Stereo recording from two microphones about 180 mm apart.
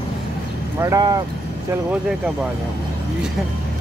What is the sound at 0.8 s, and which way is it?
Speech, 20° right (ahead or behind).